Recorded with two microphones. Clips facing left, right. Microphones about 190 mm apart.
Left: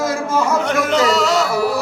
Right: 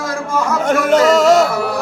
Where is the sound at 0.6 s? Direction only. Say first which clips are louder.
Right 4 dB; 50° right (ahead or behind).